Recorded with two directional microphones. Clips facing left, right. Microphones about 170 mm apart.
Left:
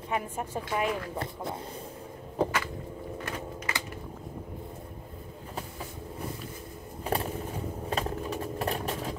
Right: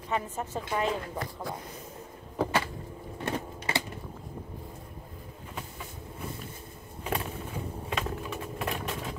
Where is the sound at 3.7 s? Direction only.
30° right (ahead or behind).